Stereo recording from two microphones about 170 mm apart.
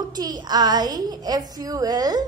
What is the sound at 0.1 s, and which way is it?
A woman's voice, 25° right (ahead or behind).